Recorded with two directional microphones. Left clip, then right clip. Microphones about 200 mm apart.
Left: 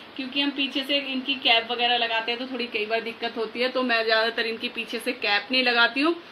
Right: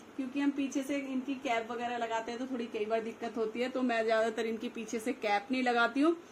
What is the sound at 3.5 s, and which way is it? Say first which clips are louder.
Speech: left 11 dB; 40° right (ahead or behind).